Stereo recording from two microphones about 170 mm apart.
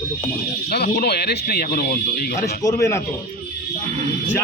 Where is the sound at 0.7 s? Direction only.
70° left (ahead or behind).